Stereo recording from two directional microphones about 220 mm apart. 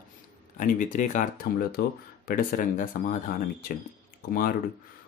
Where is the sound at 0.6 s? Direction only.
35° left (ahead or behind).